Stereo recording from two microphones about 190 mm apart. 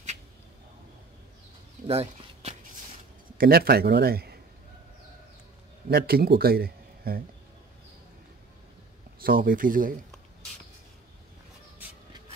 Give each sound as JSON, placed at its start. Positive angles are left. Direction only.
{"t": 1.9, "sound": "speech", "side_deg": -30}
{"t": 3.3, "sound": "a man's voice", "side_deg": -55}
{"t": 5.9, "sound": "a man's voice", "side_deg": -55}
{"t": 9.2, "sound": "speech", "side_deg": -50}